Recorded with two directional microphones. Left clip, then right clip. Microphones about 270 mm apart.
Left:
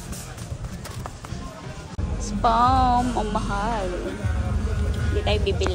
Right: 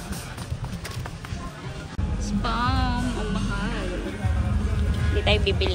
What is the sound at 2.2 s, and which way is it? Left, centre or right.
Music, centre.